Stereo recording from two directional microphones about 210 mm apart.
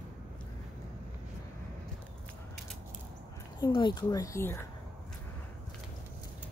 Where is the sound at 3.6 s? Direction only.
20° left (ahead or behind).